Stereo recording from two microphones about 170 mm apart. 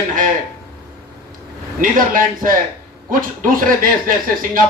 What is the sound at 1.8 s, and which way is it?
A man's voice, 55° right (ahead or behind).